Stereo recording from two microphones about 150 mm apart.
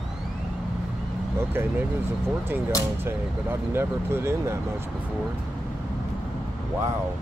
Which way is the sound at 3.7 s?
15° right (ahead or behind).